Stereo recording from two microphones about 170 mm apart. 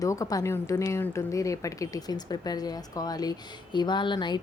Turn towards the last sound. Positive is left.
turn(degrees=25)  # may be behind; listen again after turning